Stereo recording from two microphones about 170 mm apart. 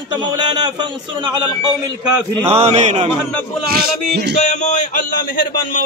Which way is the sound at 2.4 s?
40° right (ahead or behind).